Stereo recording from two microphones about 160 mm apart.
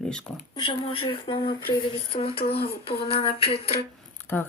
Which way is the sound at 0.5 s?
30° left (ahead or behind).